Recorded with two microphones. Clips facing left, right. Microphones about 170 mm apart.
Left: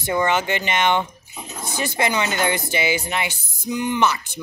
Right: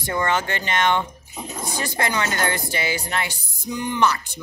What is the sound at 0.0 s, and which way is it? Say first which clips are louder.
Speech: left 2 dB; 20° left (ahead or behind).